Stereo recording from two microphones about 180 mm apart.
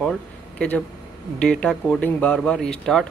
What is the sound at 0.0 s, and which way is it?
Speech, 5° left (ahead or behind).